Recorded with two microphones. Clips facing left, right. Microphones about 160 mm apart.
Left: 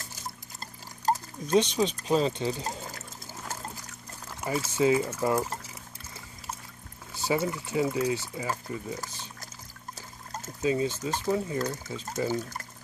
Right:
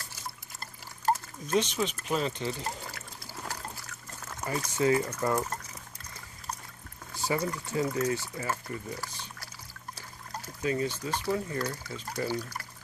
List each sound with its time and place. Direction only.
1.5 s speech: 15° left (ahead or behind)
3.4 s a sound: 20° left (ahead or behind)
4.6 s speech: 20° left (ahead or behind)
7.2 s speech: 25° left (ahead or behind)
10.3 s speech: 20° left (ahead or behind)